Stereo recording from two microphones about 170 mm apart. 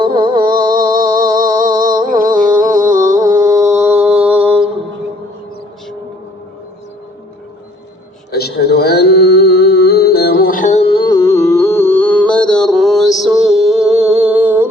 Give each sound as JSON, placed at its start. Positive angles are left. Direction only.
{"t": 0.0, "sound": "music", "side_deg": -25}
{"t": 0.4, "sound": "music", "side_deg": -55}
{"t": 3.2, "sound": "mantra", "side_deg": -20}
{"t": 8.3, "sound": "music", "side_deg": 70}